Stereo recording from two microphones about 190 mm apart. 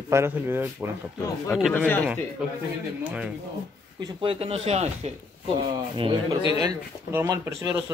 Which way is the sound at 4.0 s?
25° right (ahead or behind).